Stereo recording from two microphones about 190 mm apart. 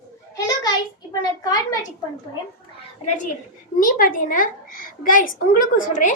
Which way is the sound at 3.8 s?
45° left (ahead or behind).